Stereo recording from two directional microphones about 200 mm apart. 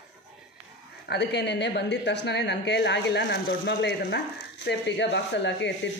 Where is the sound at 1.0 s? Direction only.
55° left (ahead or behind).